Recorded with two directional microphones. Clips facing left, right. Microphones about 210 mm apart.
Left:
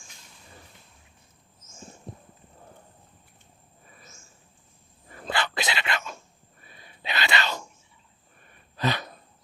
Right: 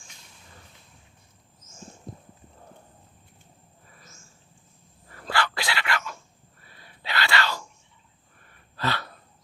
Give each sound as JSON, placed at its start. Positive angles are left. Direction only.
{"t": 5.0, "sound": "dog", "side_deg": 20}
{"t": 6.7, "sound": "whispering", "side_deg": 20}
{"t": 8.7, "sound": "gasp", "side_deg": 20}